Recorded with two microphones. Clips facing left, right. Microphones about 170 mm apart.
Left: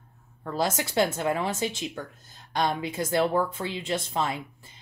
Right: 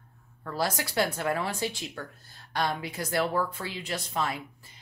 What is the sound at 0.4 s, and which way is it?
A woman's voice, 20° left (ahead or behind).